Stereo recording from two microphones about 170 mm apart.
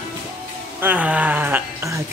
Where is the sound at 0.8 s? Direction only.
10° right (ahead or behind).